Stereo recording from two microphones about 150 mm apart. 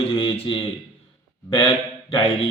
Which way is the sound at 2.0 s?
40° left (ahead or behind).